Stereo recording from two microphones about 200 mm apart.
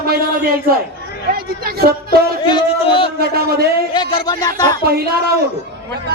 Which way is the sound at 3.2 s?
50° right (ahead or behind).